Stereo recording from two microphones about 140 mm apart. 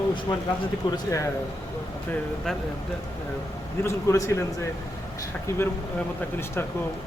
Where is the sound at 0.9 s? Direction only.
25° left (ahead or behind).